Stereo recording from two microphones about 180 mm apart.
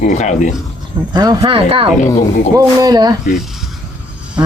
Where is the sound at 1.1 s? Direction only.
20° right (ahead or behind).